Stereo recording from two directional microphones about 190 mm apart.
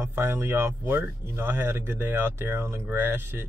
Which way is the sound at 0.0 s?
10° right (ahead or behind).